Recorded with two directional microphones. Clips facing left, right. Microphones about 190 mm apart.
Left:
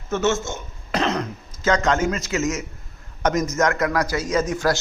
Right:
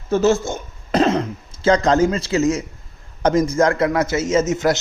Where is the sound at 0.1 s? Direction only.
35° right (ahead or behind).